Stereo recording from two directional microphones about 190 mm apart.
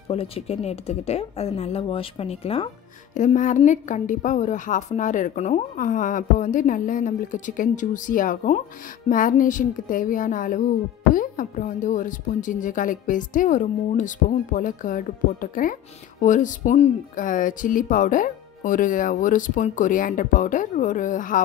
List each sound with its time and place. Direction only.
0.1 s a woman's voice: 30° left (ahead or behind)